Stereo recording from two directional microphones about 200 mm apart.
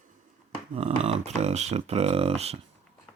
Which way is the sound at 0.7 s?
30° right (ahead or behind).